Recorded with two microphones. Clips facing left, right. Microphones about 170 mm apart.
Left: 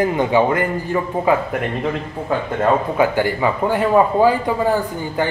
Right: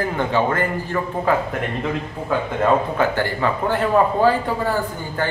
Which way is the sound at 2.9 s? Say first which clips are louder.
Left 3 dB; 10° left (ahead or behind).